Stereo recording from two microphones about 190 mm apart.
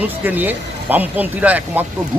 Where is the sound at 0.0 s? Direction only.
10° right (ahead or behind).